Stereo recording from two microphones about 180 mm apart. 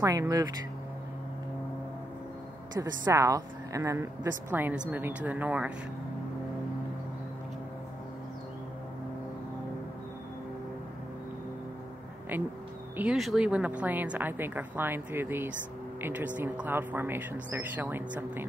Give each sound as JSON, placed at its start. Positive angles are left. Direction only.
{"t": 0.0, "sound": "speech", "side_deg": -20}
{"t": 2.8, "sound": "a woman's voice", "side_deg": -15}
{"t": 12.3, "sound": "a woman's voice", "side_deg": -10}